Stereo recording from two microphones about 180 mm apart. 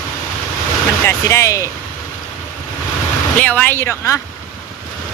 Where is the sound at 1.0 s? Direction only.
15° left (ahead or behind).